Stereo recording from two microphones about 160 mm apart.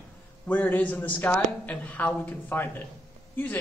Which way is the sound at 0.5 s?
10° left (ahead or behind).